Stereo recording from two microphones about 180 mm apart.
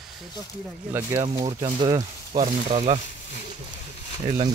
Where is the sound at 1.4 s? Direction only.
20° right (ahead or behind).